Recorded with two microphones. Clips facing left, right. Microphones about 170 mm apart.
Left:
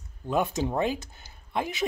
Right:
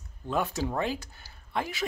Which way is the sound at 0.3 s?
20° left (ahead or behind).